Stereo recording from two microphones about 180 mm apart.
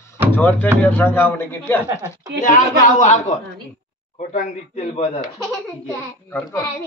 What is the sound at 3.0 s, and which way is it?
Speech, 45° left (ahead or behind).